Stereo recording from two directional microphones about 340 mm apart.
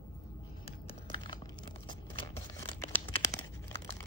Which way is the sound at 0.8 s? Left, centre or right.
Centre.